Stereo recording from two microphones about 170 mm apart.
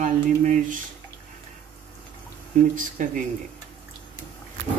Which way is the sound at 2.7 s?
50° right (ahead or behind).